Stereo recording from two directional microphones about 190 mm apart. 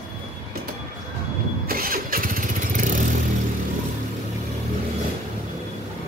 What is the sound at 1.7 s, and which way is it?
Engine starting, 50° right (ahead or behind).